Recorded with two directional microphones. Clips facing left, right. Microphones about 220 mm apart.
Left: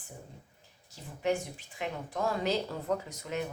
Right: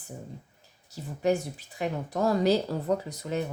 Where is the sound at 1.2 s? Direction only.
40° right (ahead or behind).